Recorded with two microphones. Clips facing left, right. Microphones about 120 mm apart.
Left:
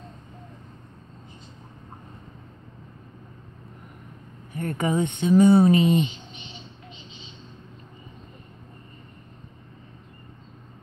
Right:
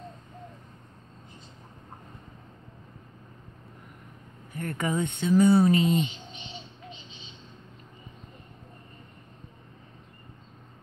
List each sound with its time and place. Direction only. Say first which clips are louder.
4.6 s speech: left 4 dB; 25° left (ahead or behind)